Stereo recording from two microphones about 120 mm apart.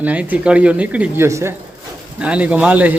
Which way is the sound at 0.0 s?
15° right (ahead or behind).